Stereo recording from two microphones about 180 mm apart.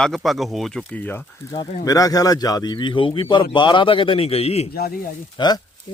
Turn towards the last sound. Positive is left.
turn(degrees=25)  # may be behind; listen again after turning